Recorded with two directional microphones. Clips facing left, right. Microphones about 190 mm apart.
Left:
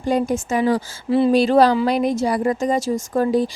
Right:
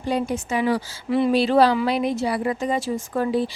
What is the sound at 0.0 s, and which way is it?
Speech, 45° left (ahead or behind).